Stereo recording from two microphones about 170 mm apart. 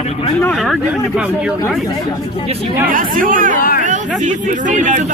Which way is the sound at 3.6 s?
55° left (ahead or behind).